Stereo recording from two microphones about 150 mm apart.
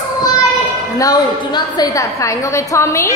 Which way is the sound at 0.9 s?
25° left (ahead or behind).